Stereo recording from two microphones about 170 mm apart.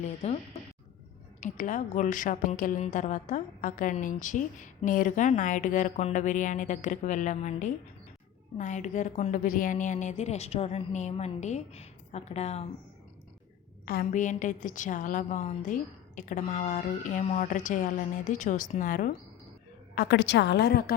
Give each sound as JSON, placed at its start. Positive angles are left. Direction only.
{"t": 0.0, "sound": "speech", "side_deg": 40}
{"t": 1.4, "sound": "a woman's voice", "side_deg": 50}
{"t": 13.8, "sound": "a woman's voice", "side_deg": 60}
{"t": 20.0, "sound": "a woman's voice", "side_deg": 85}